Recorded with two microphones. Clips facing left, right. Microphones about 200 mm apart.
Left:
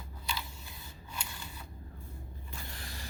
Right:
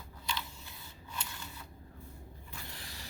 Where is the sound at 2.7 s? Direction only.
50° left (ahead or behind).